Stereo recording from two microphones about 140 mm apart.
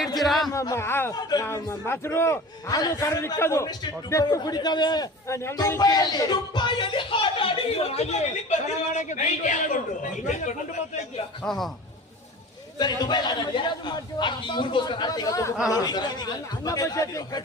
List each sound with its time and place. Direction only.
0.2 s speech: centre (ahead or behind)
0.5 s speech: 20° left (ahead or behind)
1.1 s a man's voice: 30° left (ahead or behind)
1.5 s a man's voice: 15° left (ahead or behind)
5.3 s speech: 20° left (ahead or behind); by 10.5 s 65° left (ahead or behind)
11.4 s a man's voice: centre (ahead or behind)
12.8 s a man's voice: 30° left (ahead or behind)